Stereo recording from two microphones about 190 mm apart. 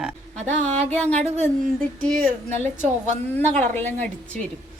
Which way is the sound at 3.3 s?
10° left (ahead or behind).